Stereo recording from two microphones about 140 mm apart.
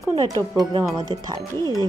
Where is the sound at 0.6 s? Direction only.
30° right (ahead or behind).